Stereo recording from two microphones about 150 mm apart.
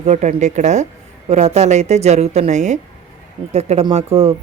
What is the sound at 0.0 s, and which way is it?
Speech, 50° right (ahead or behind).